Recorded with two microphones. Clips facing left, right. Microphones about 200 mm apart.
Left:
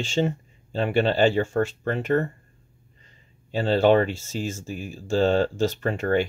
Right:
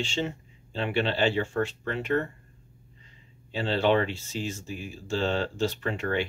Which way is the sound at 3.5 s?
45° left (ahead or behind).